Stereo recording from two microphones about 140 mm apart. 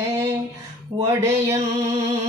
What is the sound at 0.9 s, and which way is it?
Music, 20° right (ahead or behind).